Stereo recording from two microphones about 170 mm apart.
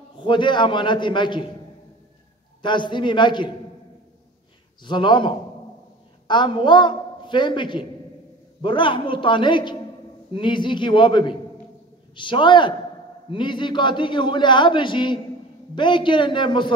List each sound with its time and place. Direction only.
0.2 s a man's voice: 25° left (ahead or behind)
2.6 s a man's voice: 25° left (ahead or behind)
4.8 s a man's voice: 25° left (ahead or behind)